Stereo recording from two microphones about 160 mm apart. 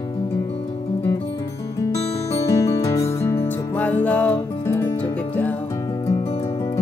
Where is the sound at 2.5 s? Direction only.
20° left (ahead or behind).